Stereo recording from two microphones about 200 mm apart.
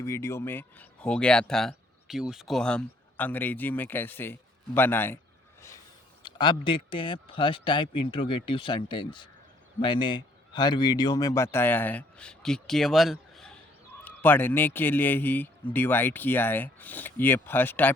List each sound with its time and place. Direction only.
0.0 s speech: 15° left (ahead or behind)
6.2 s a man's voice: 25° left (ahead or behind)